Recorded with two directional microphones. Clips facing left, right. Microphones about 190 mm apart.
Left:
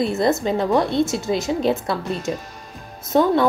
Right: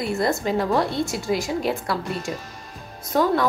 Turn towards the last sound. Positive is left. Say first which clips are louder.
# left 4 dB
turn(degrees=25)  # may be behind; listen again after turning